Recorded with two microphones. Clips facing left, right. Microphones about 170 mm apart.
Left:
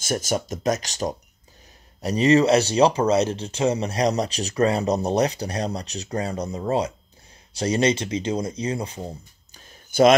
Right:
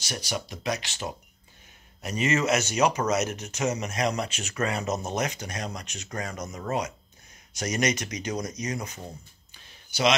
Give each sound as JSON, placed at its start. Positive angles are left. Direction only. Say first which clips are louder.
{"t": 0.0, "sound": "speech", "louder": "left 8 dB", "side_deg": 45}